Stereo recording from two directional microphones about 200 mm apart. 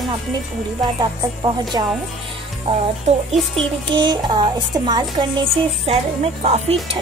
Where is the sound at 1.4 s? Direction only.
20° right (ahead or behind).